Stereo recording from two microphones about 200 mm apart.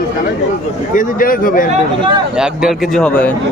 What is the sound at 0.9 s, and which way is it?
Speech, 45° left (ahead or behind).